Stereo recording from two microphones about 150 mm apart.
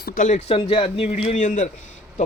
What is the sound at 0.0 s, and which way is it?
Speech, 55° left (ahead or behind).